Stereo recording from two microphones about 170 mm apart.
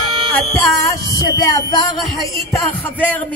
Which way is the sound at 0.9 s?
20° left (ahead or behind).